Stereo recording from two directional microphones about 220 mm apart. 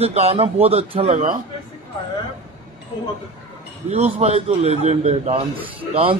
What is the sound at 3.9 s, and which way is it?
A man's voice, 30° right (ahead or behind).